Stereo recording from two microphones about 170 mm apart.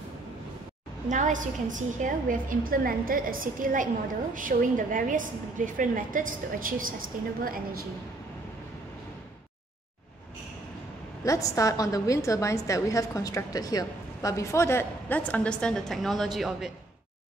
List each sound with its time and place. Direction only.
1.0 s a woman's voice: 45° right (ahead or behind)
11.2 s a woman's voice: 20° left (ahead or behind); by 16.7 s centre (ahead or behind)